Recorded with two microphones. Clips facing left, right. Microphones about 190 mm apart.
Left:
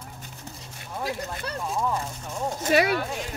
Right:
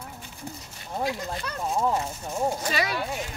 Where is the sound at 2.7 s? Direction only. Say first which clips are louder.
Left 6 dB; 55° left (ahead or behind).